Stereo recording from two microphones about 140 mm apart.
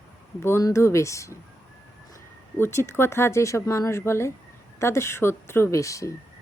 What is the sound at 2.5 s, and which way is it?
Speech, 15° left (ahead or behind).